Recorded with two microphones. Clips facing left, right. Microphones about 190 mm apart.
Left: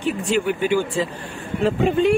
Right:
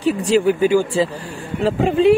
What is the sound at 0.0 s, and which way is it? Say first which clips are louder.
Speech: right 6 dB; 35° right (ahead or behind).